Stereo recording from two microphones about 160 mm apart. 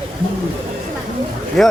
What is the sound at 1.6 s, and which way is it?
Speech, centre (ahead or behind).